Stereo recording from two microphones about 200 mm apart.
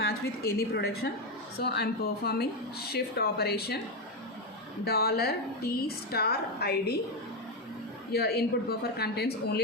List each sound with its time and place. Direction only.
0.0 s a woman's voice: 50° left (ahead or behind)
4.9 s speech: 50° left (ahead or behind)
8.1 s speech: 50° left (ahead or behind)